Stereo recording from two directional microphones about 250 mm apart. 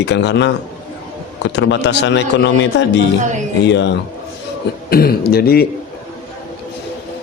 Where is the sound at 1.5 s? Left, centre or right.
Left.